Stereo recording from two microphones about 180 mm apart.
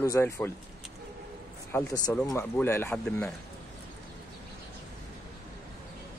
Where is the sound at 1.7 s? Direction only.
15° left (ahead or behind).